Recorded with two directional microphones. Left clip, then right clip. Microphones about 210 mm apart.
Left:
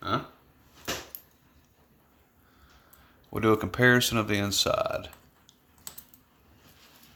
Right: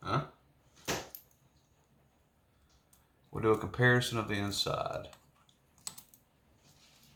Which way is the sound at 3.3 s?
55° left (ahead or behind).